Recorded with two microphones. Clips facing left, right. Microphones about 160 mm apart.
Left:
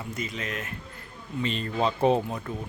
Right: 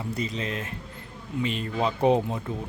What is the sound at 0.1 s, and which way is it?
Speech, 35° right (ahead or behind).